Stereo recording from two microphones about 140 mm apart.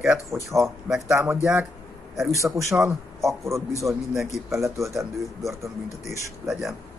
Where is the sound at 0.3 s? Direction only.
20° right (ahead or behind).